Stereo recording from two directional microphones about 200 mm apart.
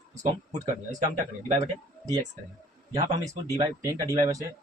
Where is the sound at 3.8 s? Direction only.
15° right (ahead or behind).